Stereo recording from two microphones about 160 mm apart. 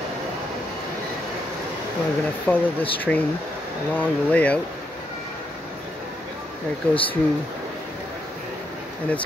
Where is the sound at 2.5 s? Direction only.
15° left (ahead or behind).